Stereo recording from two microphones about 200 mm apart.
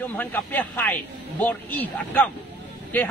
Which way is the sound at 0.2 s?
10° left (ahead or behind).